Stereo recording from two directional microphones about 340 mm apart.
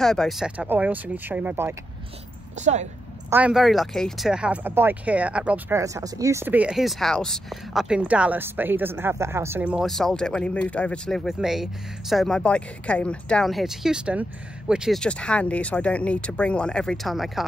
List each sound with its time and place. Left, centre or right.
0.0 s speech: centre
2.5 s speech: centre
3.3 s speech: centre